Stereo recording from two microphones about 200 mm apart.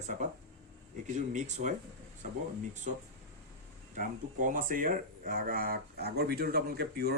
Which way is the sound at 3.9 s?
40° right (ahead or behind).